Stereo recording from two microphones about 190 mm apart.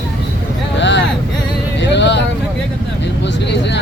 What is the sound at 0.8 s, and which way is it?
Vehicle, 70° left (ahead or behind).